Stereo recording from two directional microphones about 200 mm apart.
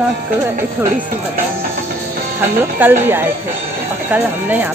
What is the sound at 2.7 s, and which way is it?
Speech, 10° right (ahead or behind).